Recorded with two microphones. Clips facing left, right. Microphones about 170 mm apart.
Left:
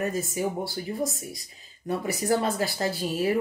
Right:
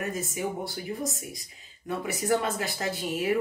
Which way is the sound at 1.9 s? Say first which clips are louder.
Left 2 dB; 35° left (ahead or behind).